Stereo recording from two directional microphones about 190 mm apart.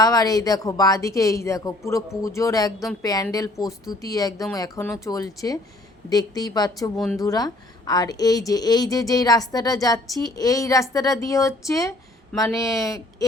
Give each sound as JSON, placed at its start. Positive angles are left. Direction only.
{"t": 0.0, "sound": "a woman's voice", "side_deg": 20}
{"t": 6.9, "sound": "speech", "side_deg": 0}
{"t": 7.2, "sound": "a woman's voice", "side_deg": 20}